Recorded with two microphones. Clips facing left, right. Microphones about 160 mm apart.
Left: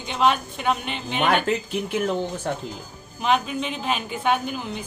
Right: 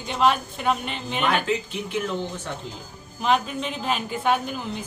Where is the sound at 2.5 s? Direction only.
45° left (ahead or behind).